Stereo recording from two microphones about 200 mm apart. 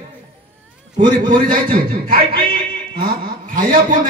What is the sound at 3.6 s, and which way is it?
Speech, 45° right (ahead or behind).